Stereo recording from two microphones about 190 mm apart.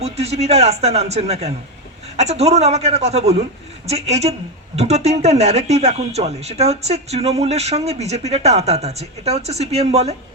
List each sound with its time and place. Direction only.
0.0 s speech: 35° right (ahead or behind)